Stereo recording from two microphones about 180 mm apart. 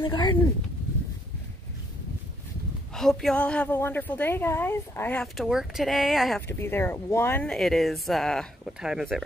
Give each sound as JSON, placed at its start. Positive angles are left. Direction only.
{"t": 0.0, "sound": "speech", "side_deg": 25}
{"t": 2.9, "sound": "a woman's voice", "side_deg": 0}
{"t": 6.4, "sound": "a woman's voice", "side_deg": 15}